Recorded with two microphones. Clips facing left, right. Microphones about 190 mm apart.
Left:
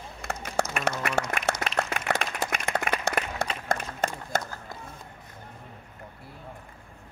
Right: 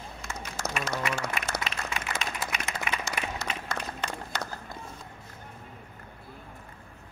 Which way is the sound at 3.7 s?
45° left (ahead or behind).